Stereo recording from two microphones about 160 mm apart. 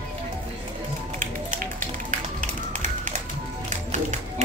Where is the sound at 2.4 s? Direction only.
50° right (ahead or behind).